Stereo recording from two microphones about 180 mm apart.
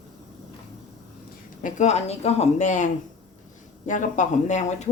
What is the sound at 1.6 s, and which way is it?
A woman's voice, 40° left (ahead or behind).